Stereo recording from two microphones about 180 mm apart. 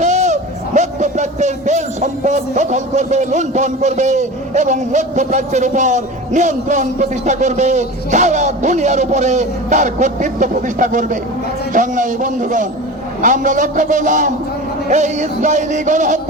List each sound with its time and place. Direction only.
0.0 s a man's voice: 40° right (ahead or behind)
11.7 s music: 45° right (ahead or behind)